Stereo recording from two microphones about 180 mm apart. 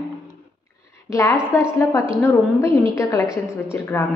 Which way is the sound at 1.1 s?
15° left (ahead or behind).